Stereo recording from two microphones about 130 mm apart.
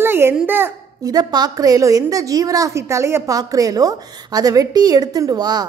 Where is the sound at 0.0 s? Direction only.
15° right (ahead or behind).